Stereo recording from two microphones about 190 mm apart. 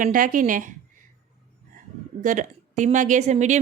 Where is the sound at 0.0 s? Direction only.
45° right (ahead or behind).